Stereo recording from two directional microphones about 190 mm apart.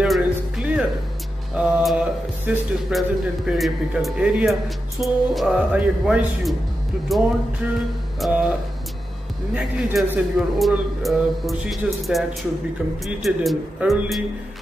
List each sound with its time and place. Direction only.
0.0 s music: 5° right (ahead or behind)
1.6 s a man's voice: 5° right (ahead or behind)
9.5 s a man's voice: 5° right (ahead or behind)